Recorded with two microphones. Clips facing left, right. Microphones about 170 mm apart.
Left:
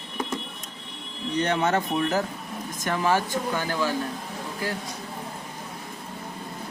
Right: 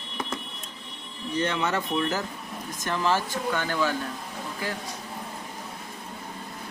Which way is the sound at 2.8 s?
15° left (ahead or behind).